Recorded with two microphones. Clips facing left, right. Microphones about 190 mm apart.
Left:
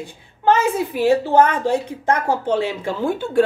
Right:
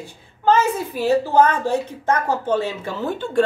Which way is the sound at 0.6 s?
15° left (ahead or behind).